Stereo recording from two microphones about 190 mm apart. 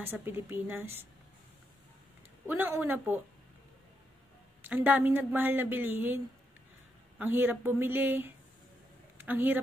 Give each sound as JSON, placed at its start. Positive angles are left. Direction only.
{"t": 0.0, "sound": "speech", "side_deg": -10}
{"t": 2.4, "sound": "speech", "side_deg": -10}
{"t": 4.6, "sound": "speech", "side_deg": -10}